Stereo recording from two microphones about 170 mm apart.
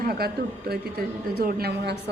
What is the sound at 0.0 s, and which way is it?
A man's voice, 60° right (ahead or behind).